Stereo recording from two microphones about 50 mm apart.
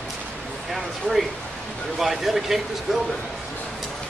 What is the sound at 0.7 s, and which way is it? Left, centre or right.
Speech, centre.